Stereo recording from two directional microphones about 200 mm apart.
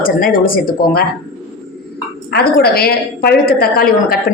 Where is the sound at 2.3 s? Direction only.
50° left (ahead or behind).